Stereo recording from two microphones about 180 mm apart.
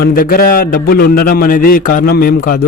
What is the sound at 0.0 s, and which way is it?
A man's voice, 55° left (ahead or behind).